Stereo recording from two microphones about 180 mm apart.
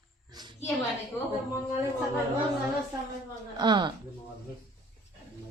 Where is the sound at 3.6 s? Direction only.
25° right (ahead or behind).